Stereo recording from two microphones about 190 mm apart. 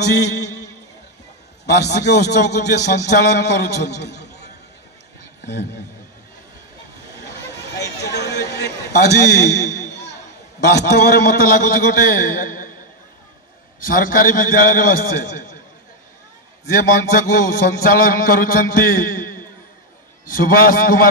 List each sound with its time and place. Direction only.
0.0 s a man's voice: 60° left (ahead or behind)
1.7 s a man's voice: 60° left (ahead or behind)
8.0 s a sound: 60° left (ahead or behind)
11.2 s a man's voice: 50° left (ahead or behind)
13.7 s a man's voice: 45° left (ahead or behind)
16.7 s a man's voice: 50° left (ahead or behind)